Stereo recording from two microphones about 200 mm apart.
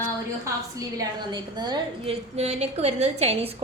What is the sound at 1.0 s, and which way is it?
A woman's voice, 20° right (ahead or behind).